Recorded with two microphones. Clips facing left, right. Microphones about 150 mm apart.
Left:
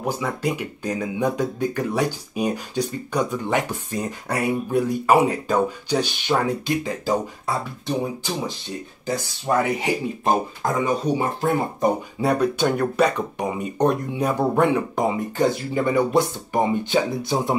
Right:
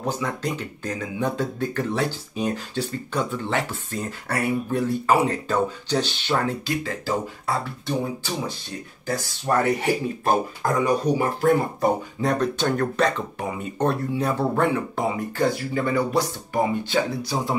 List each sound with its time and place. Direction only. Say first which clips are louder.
0.0 s speech: left 2 dB; 10° left (ahead or behind); by 11.9 s 25° left (ahead or behind)
12.2 s speech: left 3 dB; 10° left (ahead or behind)